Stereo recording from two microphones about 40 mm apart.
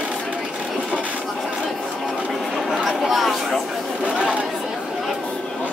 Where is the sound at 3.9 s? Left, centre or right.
Right.